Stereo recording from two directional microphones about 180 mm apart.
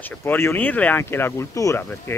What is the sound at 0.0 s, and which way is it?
Speech, 10° left (ahead or behind).